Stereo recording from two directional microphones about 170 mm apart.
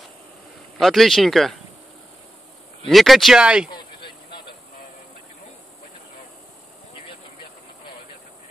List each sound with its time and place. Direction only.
0.7 s speech: centre (ahead or behind)
2.9 s speech: centre (ahead or behind)
3.7 s vehicle: 30° left (ahead or behind)